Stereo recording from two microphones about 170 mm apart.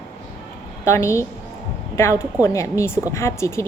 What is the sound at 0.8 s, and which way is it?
A woman's voice, 15° left (ahead or behind).